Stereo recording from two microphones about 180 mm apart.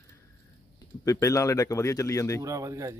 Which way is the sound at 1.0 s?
15° left (ahead or behind).